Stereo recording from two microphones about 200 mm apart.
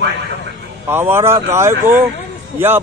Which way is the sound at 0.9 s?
10° right (ahead or behind).